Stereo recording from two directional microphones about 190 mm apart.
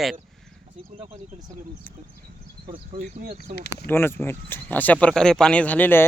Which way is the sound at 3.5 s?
60° left (ahead or behind).